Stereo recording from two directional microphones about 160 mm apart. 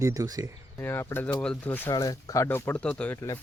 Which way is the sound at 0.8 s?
15° left (ahead or behind).